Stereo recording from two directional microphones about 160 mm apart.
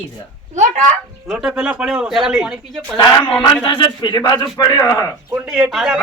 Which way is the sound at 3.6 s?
30° left (ahead or behind).